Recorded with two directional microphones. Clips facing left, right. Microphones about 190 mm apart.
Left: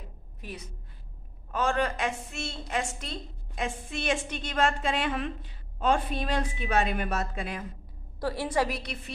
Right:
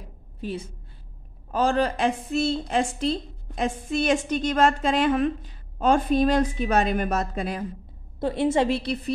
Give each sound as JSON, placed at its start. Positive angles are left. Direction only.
{"t": 0.4, "sound": "a woman's voice", "side_deg": -30}
{"t": 8.2, "sound": "a woman's voice", "side_deg": -25}